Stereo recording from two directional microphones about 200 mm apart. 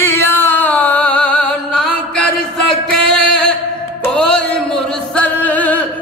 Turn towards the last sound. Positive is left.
turn(degrees=10)  # may be behind; listen again after turning